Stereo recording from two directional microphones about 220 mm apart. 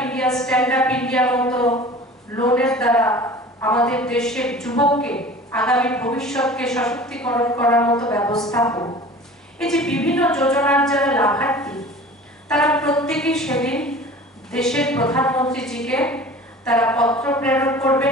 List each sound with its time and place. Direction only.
0.0 s a woman's voice: 5° left (ahead or behind)
8.5 s a sound: 15° left (ahead or behind)
9.6 s a man's voice: centre (ahead or behind)